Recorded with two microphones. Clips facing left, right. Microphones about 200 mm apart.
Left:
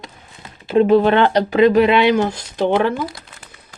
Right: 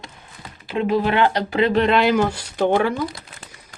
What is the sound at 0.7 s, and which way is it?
Speech, 35° left (ahead or behind).